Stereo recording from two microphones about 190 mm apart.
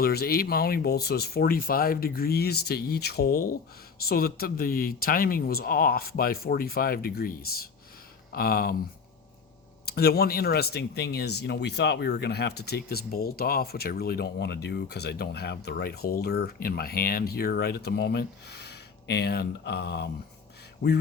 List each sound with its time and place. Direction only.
0.0 s speech: 55° left (ahead or behind)
9.8 s speech: 55° left (ahead or behind)